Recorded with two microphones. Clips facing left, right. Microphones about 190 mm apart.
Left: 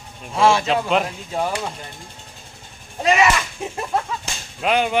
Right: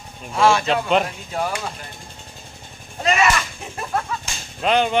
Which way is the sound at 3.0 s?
15° left (ahead or behind).